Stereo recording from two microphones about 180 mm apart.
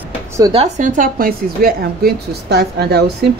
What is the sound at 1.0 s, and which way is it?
A woman's voice, 55° right (ahead or behind).